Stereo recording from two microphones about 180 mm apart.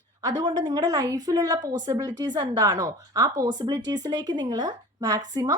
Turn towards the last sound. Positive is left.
turn(degrees=-20)  # may be behind; listen again after turning